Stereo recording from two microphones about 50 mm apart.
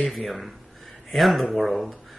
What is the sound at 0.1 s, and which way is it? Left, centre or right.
Speech, centre.